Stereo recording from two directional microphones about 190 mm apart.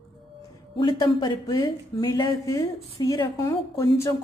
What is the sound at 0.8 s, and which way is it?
Speech, 20° left (ahead or behind).